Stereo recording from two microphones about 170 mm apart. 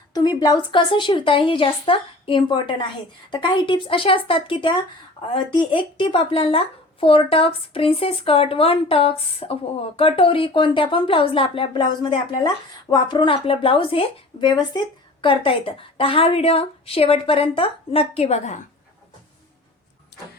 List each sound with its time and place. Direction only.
0.1 s a woman's voice: 25° left (ahead or behind); by 18.6 s 45° left (ahead or behind)
20.1 s vehicle: 75° left (ahead or behind)